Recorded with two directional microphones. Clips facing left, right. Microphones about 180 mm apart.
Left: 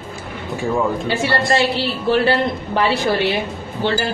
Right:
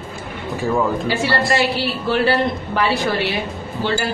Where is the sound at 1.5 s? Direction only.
25° left (ahead or behind).